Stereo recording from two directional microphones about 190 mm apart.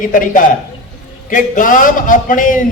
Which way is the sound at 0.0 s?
45° left (ahead or behind).